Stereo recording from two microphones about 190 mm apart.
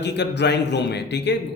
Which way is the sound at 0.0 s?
65° left (ahead or behind).